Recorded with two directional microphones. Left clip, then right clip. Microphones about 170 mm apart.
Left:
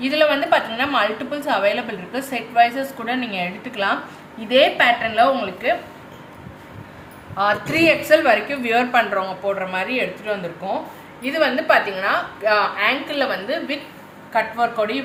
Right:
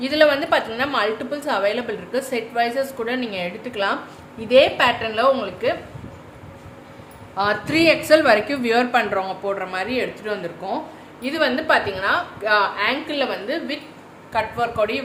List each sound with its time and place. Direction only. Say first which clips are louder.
0.0 s a woman's voice: right 1 dB; 45° right (ahead or behind)
7.6 s a woman's voice: even; 30° right (ahead or behind)
11.2 s a woman's voice: left 2 dB; 35° right (ahead or behind)
14.3 s a woman's voice: left 2 dB; 55° right (ahead or behind)